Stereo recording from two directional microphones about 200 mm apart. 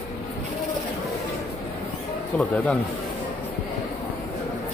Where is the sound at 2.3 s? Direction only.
5° left (ahead or behind).